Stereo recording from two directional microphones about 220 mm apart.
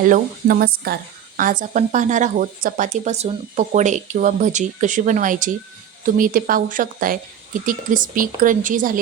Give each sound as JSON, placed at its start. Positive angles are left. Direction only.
{"t": 0.0, "sound": "speech", "side_deg": -40}